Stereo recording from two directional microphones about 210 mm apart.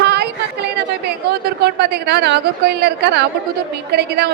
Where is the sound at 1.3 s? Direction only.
50° right (ahead or behind).